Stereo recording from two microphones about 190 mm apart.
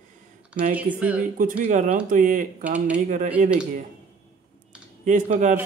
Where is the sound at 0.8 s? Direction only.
10° right (ahead or behind).